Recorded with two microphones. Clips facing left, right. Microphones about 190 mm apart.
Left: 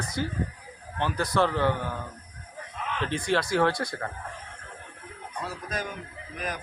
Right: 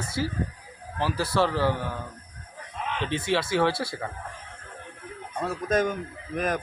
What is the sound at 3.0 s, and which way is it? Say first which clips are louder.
A man's voice: even; 5° right (ahead or behind).